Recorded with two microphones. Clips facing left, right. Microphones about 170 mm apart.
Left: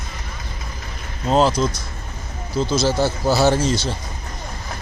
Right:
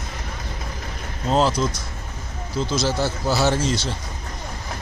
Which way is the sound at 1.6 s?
25° left (ahead or behind).